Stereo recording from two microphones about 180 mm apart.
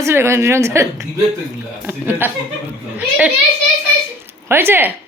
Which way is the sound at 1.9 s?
10° right (ahead or behind).